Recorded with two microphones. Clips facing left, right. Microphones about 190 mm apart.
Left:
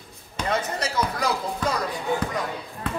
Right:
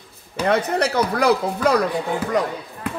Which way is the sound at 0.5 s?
65° right (ahead or behind).